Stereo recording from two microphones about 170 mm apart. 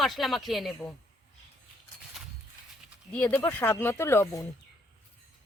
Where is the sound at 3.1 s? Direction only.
5° left (ahead or behind).